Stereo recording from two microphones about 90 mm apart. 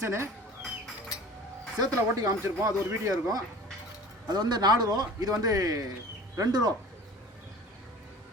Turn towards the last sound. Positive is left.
turn(degrees=-45)  # may be behind; listen again after turning